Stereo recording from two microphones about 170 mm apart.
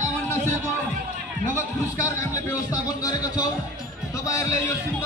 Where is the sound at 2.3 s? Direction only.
20° left (ahead or behind).